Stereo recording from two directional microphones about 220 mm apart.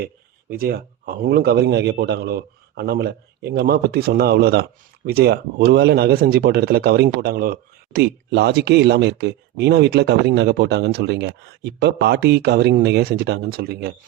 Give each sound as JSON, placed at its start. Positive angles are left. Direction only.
{"t": 0.5, "sound": "speech", "side_deg": -45}